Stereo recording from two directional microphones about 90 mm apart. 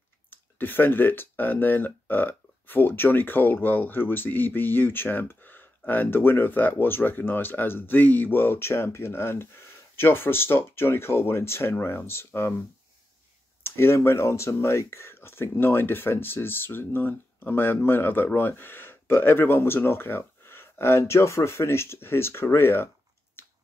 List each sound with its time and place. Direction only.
0.3 s speech: 20° left (ahead or behind)
13.7 s speech: 30° left (ahead or behind)